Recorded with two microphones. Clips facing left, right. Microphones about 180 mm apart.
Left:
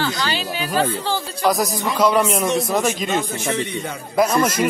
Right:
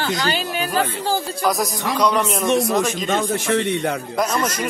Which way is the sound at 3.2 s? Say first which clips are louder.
Right 4 dB; 60° right (ahead or behind).